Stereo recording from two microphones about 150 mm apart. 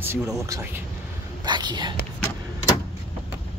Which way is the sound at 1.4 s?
30° right (ahead or behind).